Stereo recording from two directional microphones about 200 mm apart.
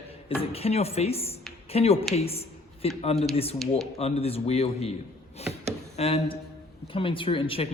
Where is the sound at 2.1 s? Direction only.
30° left (ahead or behind).